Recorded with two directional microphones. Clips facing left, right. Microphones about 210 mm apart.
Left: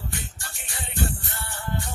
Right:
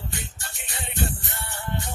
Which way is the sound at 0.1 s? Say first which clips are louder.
Even; 20° right (ahead or behind).